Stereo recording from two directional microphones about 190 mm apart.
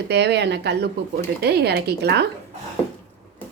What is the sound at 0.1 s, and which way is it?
Speech, 60° right (ahead or behind).